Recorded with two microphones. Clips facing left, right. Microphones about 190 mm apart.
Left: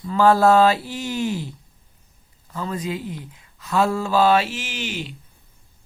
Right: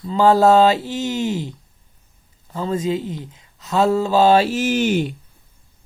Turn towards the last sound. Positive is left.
turn(degrees=-50)  # may be behind; listen again after turning